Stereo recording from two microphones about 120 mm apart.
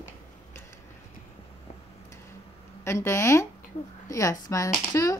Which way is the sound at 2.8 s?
25° left (ahead or behind).